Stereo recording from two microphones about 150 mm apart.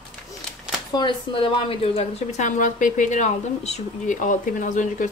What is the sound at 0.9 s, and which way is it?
Speech, 30° left (ahead or behind).